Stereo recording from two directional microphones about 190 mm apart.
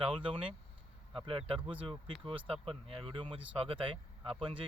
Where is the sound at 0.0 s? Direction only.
25° right (ahead or behind).